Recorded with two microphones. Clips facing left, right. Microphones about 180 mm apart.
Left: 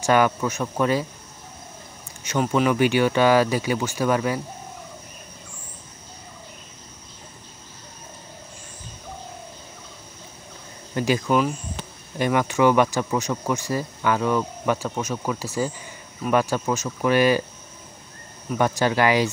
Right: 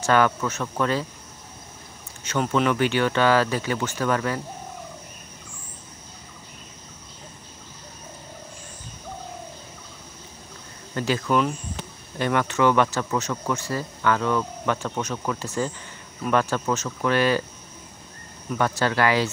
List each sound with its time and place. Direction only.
0.0 s speech: 15° left (ahead or behind)
2.2 s speech: 10° left (ahead or behind)
11.0 s speech: 15° left (ahead or behind)
18.6 s speech: 15° left (ahead or behind)